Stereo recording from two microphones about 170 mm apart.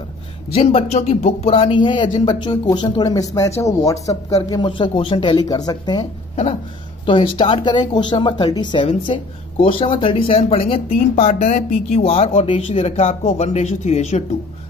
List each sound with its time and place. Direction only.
0.6 s speech: 40° left (ahead or behind)
7.1 s speech: 30° left (ahead or behind)
11.4 s speech: 45° left (ahead or behind)